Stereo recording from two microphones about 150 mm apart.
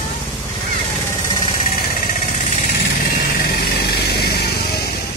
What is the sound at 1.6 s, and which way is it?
Vehicle, 65° left (ahead or behind).